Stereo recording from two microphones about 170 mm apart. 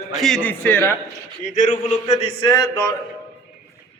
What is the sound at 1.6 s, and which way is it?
Speech, 45° left (ahead or behind).